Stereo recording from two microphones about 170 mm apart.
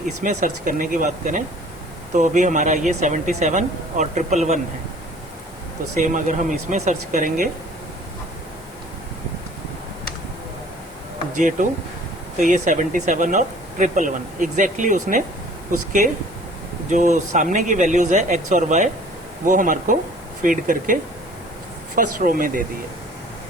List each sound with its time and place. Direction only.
0.2 s speech: 45° right (ahead or behind)
6.0 s speech: 50° right (ahead or behind)
11.6 s speech: 45° right (ahead or behind)
16.9 s speech: 45° right (ahead or behind)